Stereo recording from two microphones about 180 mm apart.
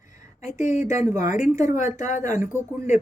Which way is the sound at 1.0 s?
15° right (ahead or behind).